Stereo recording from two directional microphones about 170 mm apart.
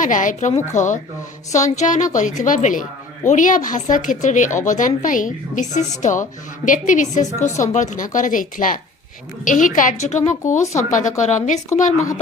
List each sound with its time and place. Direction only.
0.0 s a woman's voice: 50° left (ahead or behind)